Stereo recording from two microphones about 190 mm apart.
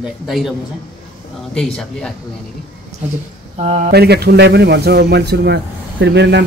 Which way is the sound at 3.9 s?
60° right (ahead or behind).